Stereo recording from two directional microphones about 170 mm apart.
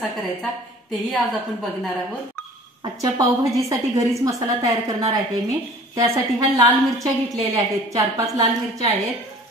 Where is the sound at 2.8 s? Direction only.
20° right (ahead or behind).